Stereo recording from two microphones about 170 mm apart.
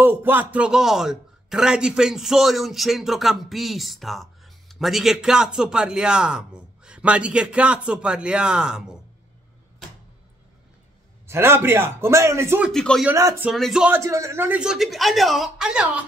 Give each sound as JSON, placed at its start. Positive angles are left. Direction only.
{"t": 0.0, "sound": "a man's voice", "side_deg": -10}
{"t": 11.2, "sound": "a man's voice", "side_deg": -15}
{"t": 12.7, "sound": "a man's voice", "side_deg": 5}
{"t": 13.0, "sound": "a man's voice", "side_deg": -15}
{"t": 13.5, "sound": "a man's voice", "side_deg": 0}